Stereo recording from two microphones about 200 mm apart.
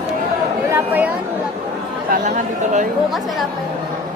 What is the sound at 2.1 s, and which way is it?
Speech, 40° right (ahead or behind).